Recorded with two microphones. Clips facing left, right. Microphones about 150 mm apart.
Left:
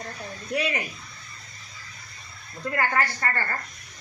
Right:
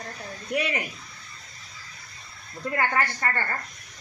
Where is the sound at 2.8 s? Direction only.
15° right (ahead or behind).